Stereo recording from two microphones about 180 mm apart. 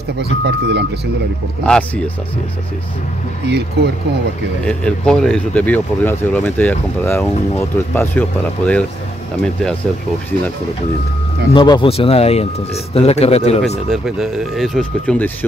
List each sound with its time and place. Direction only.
0.2 s speech: 70° right (ahead or behind)
1.6 s speech: 5° left (ahead or behind)
3.4 s speech: 70° right (ahead or behind)
4.6 s speech: 5° left (ahead or behind)
11.5 s speech: 25° left (ahead or behind)
13.8 s speech: centre (ahead or behind)